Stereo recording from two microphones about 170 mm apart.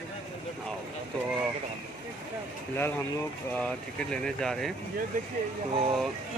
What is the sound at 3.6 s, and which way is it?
Speech, 5° left (ahead or behind).